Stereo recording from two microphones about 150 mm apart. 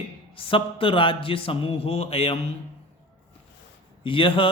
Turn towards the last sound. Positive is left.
turn(degrees=35)  # may be behind; listen again after turning